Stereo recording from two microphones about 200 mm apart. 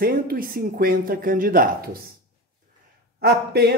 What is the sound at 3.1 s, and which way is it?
Speech, 50° right (ahead or behind).